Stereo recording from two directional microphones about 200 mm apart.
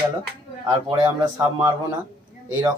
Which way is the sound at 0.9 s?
15° right (ahead or behind).